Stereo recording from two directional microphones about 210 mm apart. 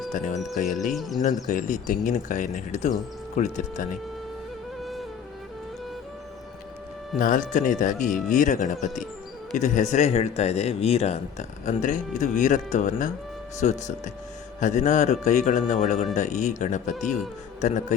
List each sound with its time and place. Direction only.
0.1 s speech: 40° left (ahead or behind)
0.7 s speech: centre (ahead or behind)
1.5 s speech: 35° left (ahead or behind)
4.8 s music: centre (ahead or behind)
7.2 s speech: 40° left (ahead or behind)